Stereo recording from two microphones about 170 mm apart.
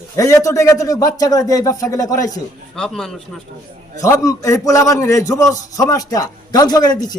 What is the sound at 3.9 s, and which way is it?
A man's voice, 20° left (ahead or behind).